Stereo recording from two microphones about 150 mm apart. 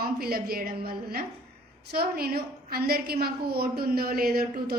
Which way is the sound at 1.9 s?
90° right.